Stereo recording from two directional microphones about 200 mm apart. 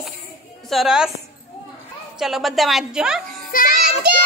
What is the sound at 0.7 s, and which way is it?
Speech, centre (ahead or behind).